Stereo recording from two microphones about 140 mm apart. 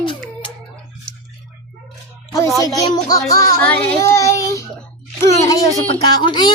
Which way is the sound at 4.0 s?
20° left (ahead or behind).